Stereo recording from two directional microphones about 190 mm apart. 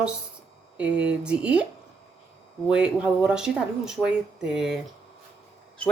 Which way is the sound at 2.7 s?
5° right (ahead or behind).